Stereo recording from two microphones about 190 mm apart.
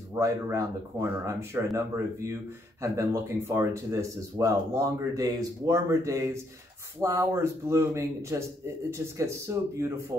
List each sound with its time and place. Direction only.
0.1 s speech: 15° right (ahead or behind)